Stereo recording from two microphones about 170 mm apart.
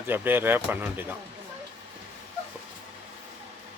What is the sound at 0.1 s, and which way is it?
Speech, 10° right (ahead or behind).